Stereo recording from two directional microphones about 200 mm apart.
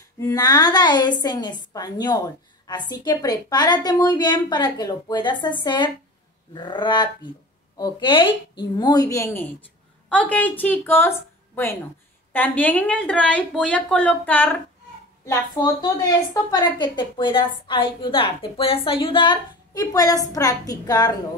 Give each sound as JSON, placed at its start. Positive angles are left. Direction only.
{"t": 0.2, "sound": "a woman's voice", "side_deg": 20}